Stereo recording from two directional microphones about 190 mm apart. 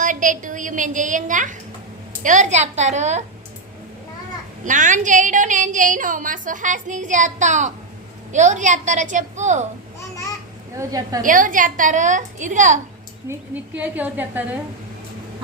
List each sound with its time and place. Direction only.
0.0 s a woman's voice: 45° right (ahead or behind)
4.6 s a woman's voice: 40° right (ahead or behind)
10.8 s a woman's voice: 20° right (ahead or behind)
11.2 s a woman's voice: 45° right (ahead or behind)
13.2 s a woman's voice: 10° right (ahead or behind)